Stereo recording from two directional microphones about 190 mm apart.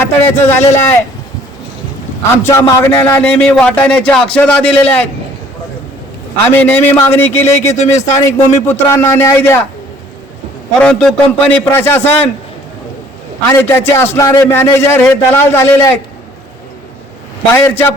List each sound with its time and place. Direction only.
0.0 s a man's voice: 10° left (ahead or behind)
2.4 s a man's voice: 15° left (ahead or behind)
6.5 s a man's voice: 10° left (ahead or behind)
10.8 s a man's voice: 5° left (ahead or behind)
13.5 s a man's voice: 15° left (ahead or behind)
17.5 s a man's voice: 10° left (ahead or behind)